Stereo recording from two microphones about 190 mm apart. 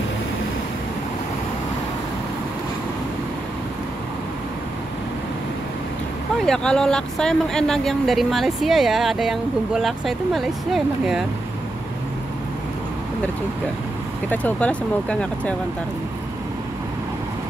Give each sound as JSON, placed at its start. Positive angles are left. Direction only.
{"t": 6.4, "sound": "speech", "side_deg": 5}
{"t": 14.3, "sound": "speech", "side_deg": 5}